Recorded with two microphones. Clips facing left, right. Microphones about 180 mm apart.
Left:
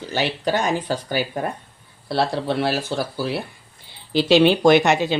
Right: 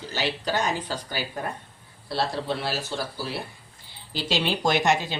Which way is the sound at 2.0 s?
65° left (ahead or behind).